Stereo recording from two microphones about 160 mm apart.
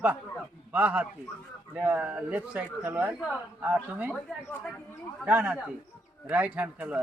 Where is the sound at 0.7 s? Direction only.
10° right (ahead or behind).